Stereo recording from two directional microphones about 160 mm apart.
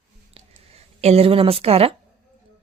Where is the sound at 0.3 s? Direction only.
40° right (ahead or behind).